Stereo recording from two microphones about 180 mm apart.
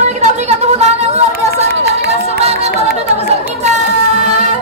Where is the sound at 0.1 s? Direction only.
40° right (ahead or behind).